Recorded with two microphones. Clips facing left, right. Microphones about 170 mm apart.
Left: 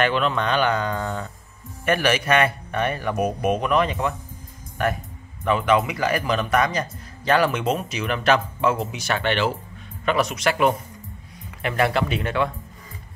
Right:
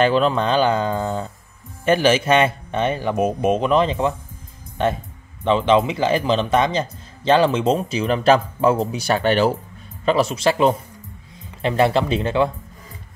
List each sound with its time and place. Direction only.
0.0 s speech: 35° right (ahead or behind)